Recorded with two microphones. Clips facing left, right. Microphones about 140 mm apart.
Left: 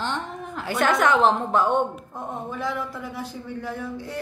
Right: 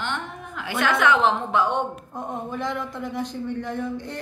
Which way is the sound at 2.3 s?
5° left (ahead or behind).